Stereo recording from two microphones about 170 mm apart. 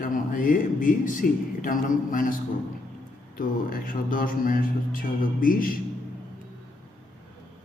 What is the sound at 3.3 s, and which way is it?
Music, 55° left (ahead or behind).